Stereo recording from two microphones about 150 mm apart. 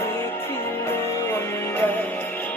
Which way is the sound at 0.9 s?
15° left (ahead or behind).